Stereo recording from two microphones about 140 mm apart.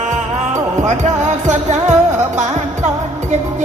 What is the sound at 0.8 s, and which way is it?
Music, 55° right (ahead or behind).